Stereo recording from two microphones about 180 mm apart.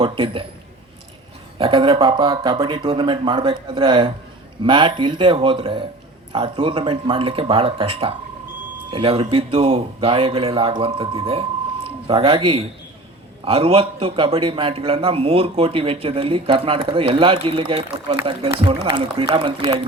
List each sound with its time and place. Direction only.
0.0 s speech: 30° right (ahead or behind)
1.5 s a man's voice: 30° right (ahead or behind)